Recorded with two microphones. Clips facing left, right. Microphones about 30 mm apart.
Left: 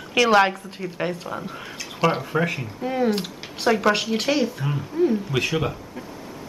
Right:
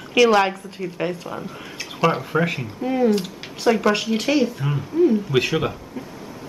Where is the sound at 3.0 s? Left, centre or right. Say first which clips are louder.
Right 4 dB; centre.